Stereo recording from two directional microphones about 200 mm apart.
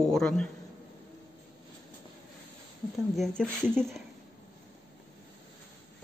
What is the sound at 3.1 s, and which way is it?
Speech, 5° left (ahead or behind).